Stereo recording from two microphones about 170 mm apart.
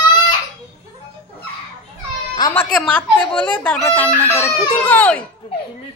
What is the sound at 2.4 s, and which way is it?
Speech, 25° left (ahead or behind).